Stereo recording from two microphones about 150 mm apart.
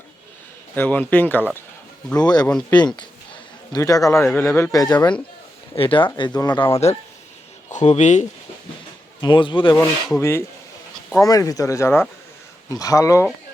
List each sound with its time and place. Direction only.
0.8 s speech: 10° left (ahead or behind)
2.1 s speech: 25° left (ahead or behind)
5.7 s speech: 35° left (ahead or behind); by 8.3 s 50° left (ahead or behind)
9.2 s speech: 30° left (ahead or behind)
10.2 s speech: 15° left (ahead or behind)